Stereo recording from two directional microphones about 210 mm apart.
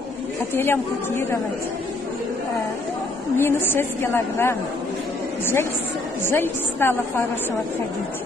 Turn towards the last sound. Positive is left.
turn(degrees=10)  # may be behind; listen again after turning